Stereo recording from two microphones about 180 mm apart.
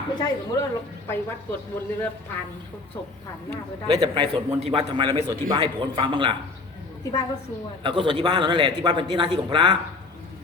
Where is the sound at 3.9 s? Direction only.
30° right (ahead or behind).